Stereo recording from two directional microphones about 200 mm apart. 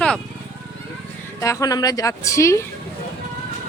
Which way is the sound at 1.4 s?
15° left (ahead or behind).